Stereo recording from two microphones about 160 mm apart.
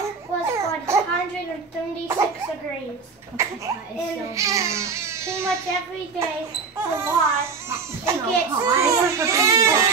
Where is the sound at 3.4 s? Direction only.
15° right (ahead or behind).